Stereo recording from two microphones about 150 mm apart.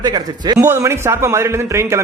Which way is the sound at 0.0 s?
30° right (ahead or behind).